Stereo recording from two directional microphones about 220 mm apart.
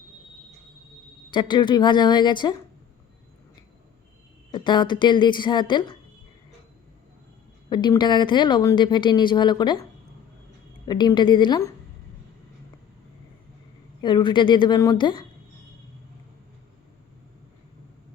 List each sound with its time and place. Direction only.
1.3 s a woman's voice: 20° left (ahead or behind)
4.5 s a woman's voice: 20° left (ahead or behind)
7.7 s a woman's voice: 20° left (ahead or behind)
10.8 s a woman's voice: 20° left (ahead or behind)
14.0 s a woman's voice: 20° left (ahead or behind)